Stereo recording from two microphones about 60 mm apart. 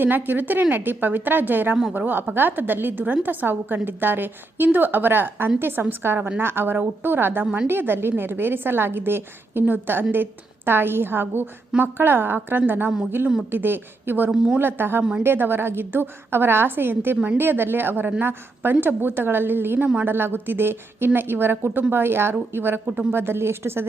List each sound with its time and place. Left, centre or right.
0.0 s a woman's voice: right
14.3 s a woman's voice: centre
14.6 s a woman's voice: right